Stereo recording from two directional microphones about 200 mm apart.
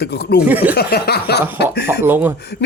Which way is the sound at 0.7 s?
50° left (ahead or behind).